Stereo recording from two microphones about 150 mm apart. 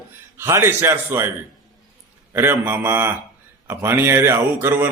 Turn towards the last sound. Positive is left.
turn(degrees=-15)  # may be behind; listen again after turning